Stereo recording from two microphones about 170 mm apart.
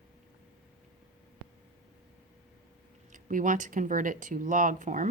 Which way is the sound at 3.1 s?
50° right (ahead or behind).